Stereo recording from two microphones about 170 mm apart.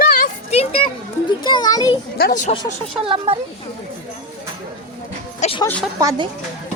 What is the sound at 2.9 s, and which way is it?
Speech, 30° right (ahead or behind).